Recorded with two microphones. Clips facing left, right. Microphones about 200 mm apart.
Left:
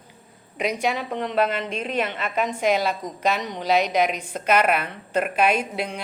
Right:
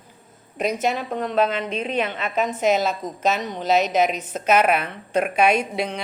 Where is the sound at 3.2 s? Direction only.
15° left (ahead or behind).